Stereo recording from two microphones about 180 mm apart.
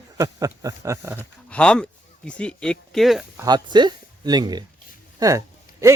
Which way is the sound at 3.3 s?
20° right (ahead or behind).